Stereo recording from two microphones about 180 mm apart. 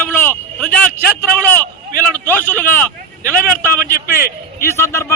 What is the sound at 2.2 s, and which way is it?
A man's voice, 10° left (ahead or behind).